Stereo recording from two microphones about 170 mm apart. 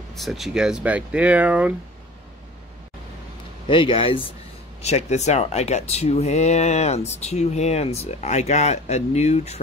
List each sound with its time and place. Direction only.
0.1 s speech: centre (ahead or behind)
3.6 s speech: 30° left (ahead or behind)